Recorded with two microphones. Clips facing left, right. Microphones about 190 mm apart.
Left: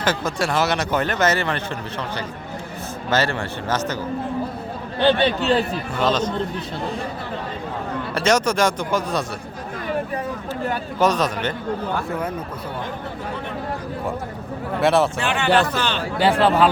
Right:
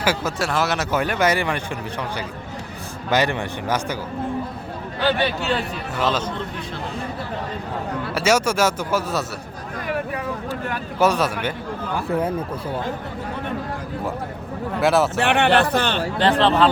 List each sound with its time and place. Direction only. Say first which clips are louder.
0.0 s speech: even; 10° right (ahead or behind)
3.1 s speech: right 1 dB; 15° right (ahead or behind)
4.9 s a man's voice: left 4 dB; 25° left (ahead or behind)
6.0 s speech: left 2 dB; 5° right (ahead or behind)
8.1 s speech: even; 10° right (ahead or behind)
11.0 s speech: right 1 dB; 10° right (ahead or behind)
14.8 s speech: even; centre (ahead or behind)
15.2 s a man's voice: right 2 dB; 60° right (ahead or behind)
16.1 s speech: left 1 dB; 10° left (ahead or behind)